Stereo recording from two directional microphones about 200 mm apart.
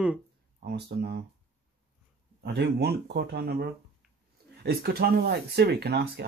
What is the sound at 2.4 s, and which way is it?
Speech, 55° right (ahead or behind).